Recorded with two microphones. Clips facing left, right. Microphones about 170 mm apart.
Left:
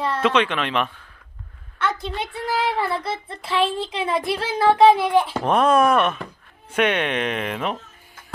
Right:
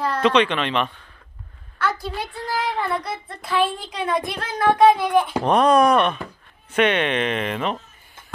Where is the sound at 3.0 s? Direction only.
30° left (ahead or behind).